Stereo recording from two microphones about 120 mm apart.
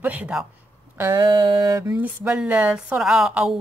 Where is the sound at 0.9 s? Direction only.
20° right (ahead or behind).